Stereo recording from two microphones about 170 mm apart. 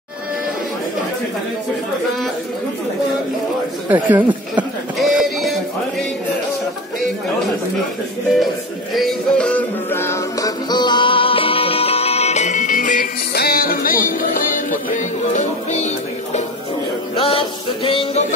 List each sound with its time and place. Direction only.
3.9 s a sound: 10° right (ahead or behind)
8.9 s music: 5° left (ahead or behind); by 15.9 s 45° left (ahead or behind)
17.1 s music: 35° left (ahead or behind)